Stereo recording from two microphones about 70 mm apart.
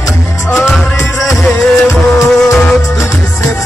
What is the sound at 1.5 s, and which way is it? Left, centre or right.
Music, left.